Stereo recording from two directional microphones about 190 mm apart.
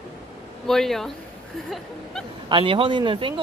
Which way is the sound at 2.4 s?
25° right (ahead or behind).